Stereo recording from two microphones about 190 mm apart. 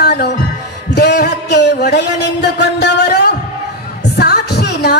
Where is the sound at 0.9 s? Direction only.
60° left (ahead or behind).